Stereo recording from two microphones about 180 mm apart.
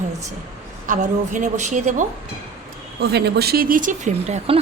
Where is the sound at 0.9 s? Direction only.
45° right (ahead or behind).